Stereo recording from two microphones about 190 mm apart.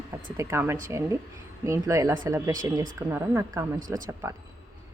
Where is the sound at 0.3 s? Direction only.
15° right (ahead or behind).